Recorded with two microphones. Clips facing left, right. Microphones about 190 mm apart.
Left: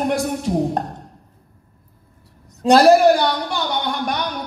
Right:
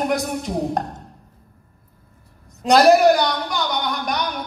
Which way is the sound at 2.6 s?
30° left (ahead or behind).